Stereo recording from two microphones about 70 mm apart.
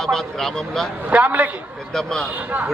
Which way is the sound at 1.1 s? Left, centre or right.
Right.